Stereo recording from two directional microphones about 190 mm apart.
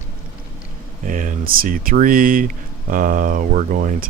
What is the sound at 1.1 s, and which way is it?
Speech, 45° right (ahead or behind).